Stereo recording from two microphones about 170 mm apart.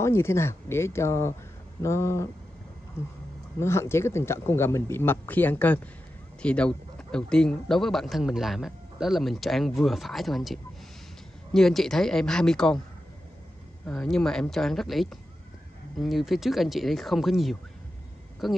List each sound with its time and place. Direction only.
0.0 s speech: 15° left (ahead or behind)
13.8 s speech: 5° left (ahead or behind)